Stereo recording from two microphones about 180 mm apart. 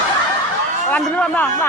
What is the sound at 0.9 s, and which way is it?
Speech, 10° left (ahead or behind).